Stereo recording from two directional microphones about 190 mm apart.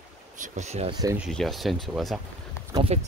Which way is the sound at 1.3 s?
Centre (ahead or behind).